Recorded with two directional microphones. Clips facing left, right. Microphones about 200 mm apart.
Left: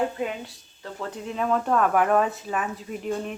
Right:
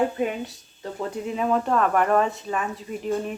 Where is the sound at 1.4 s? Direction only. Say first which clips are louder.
Even; 5° right (ahead or behind).